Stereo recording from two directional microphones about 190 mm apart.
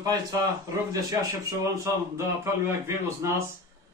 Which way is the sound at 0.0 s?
20° right (ahead or behind).